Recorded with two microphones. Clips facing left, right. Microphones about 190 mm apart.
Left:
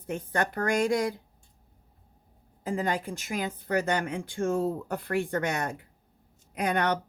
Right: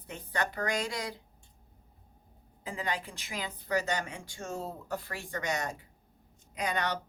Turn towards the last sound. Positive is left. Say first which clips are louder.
# left 6 dB
turn(degrees=55)  # may be behind; listen again after turning